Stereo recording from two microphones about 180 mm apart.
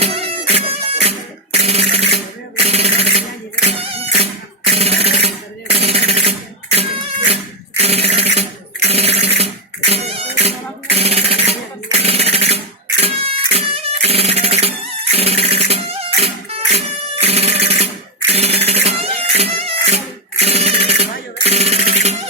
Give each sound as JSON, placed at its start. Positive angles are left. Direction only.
{"t": 0.0, "sound": "music", "side_deg": -35}
{"t": 1.5, "sound": "sanding", "side_deg": -35}
{"t": 2.6, "sound": "a sound", "side_deg": -35}
{"t": 8.9, "sound": "music", "side_deg": -35}
{"t": 10.4, "sound": "jackhammer", "side_deg": -35}
{"t": 13.0, "sound": "music", "side_deg": -35}